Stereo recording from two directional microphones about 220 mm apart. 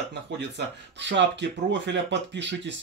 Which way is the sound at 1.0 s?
55° right (ahead or behind).